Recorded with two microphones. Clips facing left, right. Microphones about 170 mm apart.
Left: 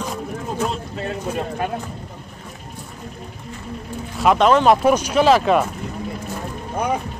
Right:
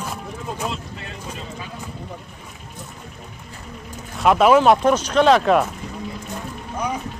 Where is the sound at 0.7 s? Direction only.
40° left (ahead or behind).